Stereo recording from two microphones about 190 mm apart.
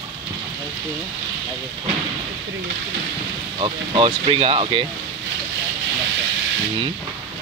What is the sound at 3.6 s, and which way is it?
Speech, 25° right (ahead or behind).